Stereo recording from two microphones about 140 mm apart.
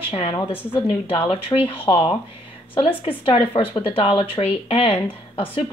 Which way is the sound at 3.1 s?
40° left (ahead or behind).